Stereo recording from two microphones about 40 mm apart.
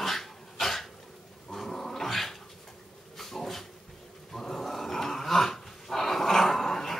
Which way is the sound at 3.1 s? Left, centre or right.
Centre.